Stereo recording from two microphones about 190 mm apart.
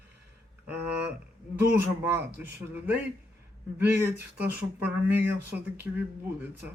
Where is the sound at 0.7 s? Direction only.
5° right (ahead or behind).